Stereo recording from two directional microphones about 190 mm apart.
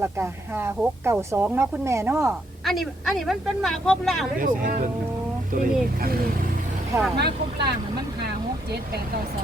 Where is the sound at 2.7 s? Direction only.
Centre (ahead or behind).